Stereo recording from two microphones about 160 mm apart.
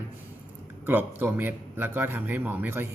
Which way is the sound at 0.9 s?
10° right (ahead or behind).